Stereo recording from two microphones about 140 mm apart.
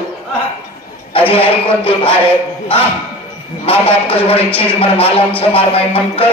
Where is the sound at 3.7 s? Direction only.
40° left (ahead or behind).